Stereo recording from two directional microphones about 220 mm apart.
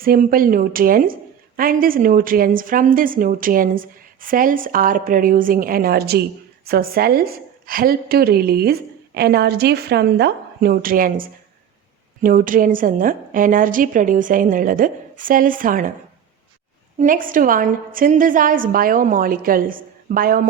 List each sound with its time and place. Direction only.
0.0 s a woman's voice: 40° right (ahead or behind)
17.0 s a woman's voice: 40° right (ahead or behind)